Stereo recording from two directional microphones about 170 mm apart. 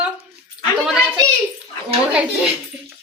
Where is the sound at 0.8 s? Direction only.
5° right (ahead or behind).